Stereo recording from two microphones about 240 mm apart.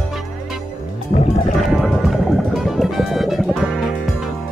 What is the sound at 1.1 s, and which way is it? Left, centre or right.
Music, left.